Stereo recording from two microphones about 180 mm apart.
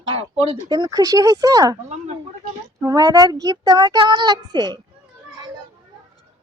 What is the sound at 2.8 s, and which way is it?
A child's voice, 20° right (ahead or behind).